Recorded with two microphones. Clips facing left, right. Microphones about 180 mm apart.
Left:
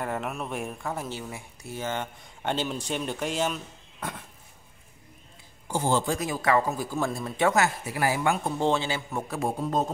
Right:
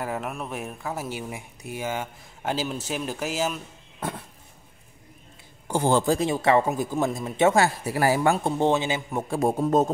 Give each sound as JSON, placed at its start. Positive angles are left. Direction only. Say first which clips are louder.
{"t": 0.0, "sound": "speech", "louder": "right 1 dB", "side_deg": 0}
{"t": 5.7, "sound": "a man's voice", "louder": "right 4 dB", "side_deg": -60}
{"t": 6.0, "sound": "a man's voice", "louder": "right 5 dB", "side_deg": -30}
{"t": 8.5, "sound": "a man's voice", "louder": "right 3 dB", "side_deg": -15}
{"t": 9.3, "sound": "a man's voice", "louder": "right 7 dB", "side_deg": -45}